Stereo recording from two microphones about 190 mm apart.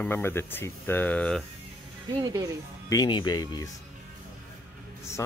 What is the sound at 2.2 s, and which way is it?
Speech, 20° right (ahead or behind).